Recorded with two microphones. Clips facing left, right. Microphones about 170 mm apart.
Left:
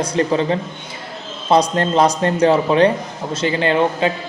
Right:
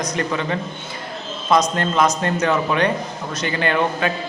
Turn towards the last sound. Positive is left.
turn(degrees=25)  # may be behind; listen again after turning